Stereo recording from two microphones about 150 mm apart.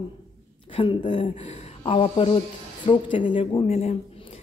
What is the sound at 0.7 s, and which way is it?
A woman's voice, 35° left (ahead or behind).